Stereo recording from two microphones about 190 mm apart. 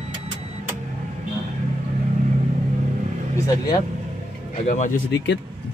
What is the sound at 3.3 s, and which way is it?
Speech, 20° left (ahead or behind).